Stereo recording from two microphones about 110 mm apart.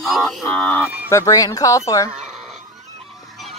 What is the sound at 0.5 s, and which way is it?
Speech, 15° left (ahead or behind).